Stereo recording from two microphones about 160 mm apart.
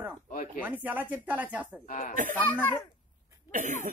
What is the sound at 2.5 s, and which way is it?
Speech, 10° left (ahead or behind).